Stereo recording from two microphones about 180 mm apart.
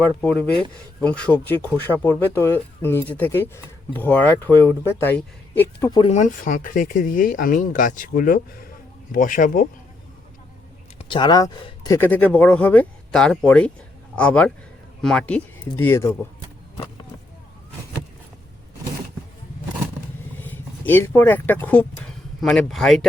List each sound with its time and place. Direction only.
0.2 s speech: 5° left (ahead or behind)
6.1 s speech: 50° left (ahead or behind)
10.9 s speech: 25° left (ahead or behind)
11.9 s speech: 10° left (ahead or behind)
20.4 s speech: 10° left (ahead or behind)